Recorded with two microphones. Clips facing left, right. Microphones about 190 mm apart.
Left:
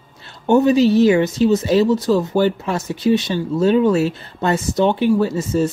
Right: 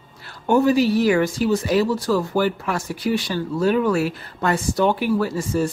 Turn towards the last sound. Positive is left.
turn(degrees=20)  # may be behind; listen again after turning